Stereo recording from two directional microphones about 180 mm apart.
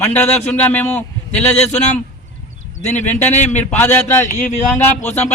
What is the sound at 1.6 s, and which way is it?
A man's voice, 40° left (ahead or behind).